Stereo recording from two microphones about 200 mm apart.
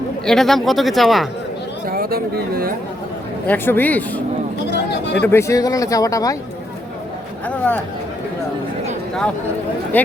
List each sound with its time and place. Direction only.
0.3 s speech: centre (ahead or behind)
1.9 s speech: 50° right (ahead or behind)
3.4 s speech: 10° left (ahead or behind)
4.7 s a sound: 60° left (ahead or behind)
5.2 s speech: 10° left (ahead or behind)
7.4 s speech: 5° left (ahead or behind)
9.9 s speech: 10° left (ahead or behind)